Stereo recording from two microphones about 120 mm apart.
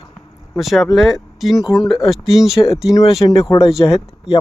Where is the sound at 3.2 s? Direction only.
40° left (ahead or behind).